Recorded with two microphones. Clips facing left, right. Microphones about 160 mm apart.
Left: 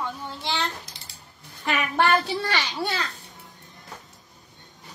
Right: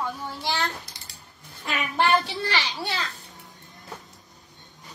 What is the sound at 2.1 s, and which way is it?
Speech, 45° left (ahead or behind).